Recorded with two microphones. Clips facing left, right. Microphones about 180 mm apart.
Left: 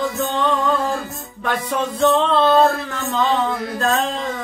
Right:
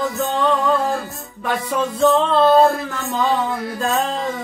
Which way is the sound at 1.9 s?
5° right (ahead or behind).